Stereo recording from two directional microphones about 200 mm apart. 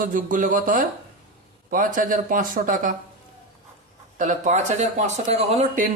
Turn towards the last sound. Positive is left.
turn(degrees=-35)  # may be behind; listen again after turning